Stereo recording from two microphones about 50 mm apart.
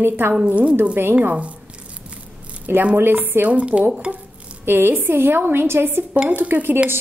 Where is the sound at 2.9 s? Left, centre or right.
Right.